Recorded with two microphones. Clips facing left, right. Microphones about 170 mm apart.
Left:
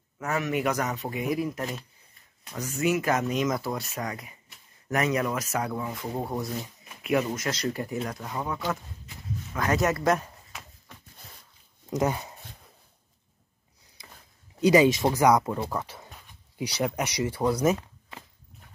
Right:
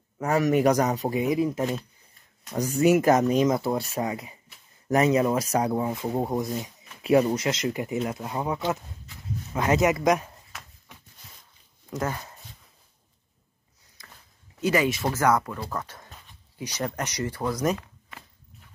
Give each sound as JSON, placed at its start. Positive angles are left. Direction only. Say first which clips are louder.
{"t": 0.2, "sound": "speech", "louder": "right 6 dB", "side_deg": -35}
{"t": 1.2, "sound": "speech", "louder": "right 3 dB", "side_deg": -20}
{"t": 2.5, "sound": "speech", "louder": "right 6 dB", "side_deg": -40}
{"t": 6.1, "sound": "speech", "louder": "right 4 dB", "side_deg": -15}
{"t": 7.0, "sound": "speech", "louder": "right 6 dB", "side_deg": -30}
{"t": 7.4, "sound": "speech", "louder": "right 3 dB", "side_deg": -20}
{"t": 9.5, "sound": "speech", "louder": "right 3 dB", "side_deg": -25}
{"t": 11.9, "sound": "speech", "louder": "left 4 dB", "side_deg": 15}
{"t": 14.6, "sound": "speech", "louder": "left 5 dB", "side_deg": 20}
{"t": 15.7, "sound": "a sound", "louder": "left 1 dB", "side_deg": 10}
{"t": 16.8, "sound": "speech", "louder": "left 2 dB", "side_deg": 10}